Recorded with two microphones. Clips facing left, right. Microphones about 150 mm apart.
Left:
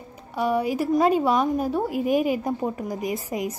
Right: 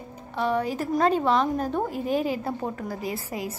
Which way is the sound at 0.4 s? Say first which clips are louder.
Left 3 dB; 10° left (ahead or behind).